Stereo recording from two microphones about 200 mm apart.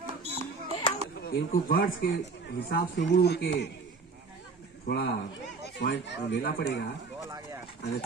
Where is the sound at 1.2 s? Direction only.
50° left (ahead or behind).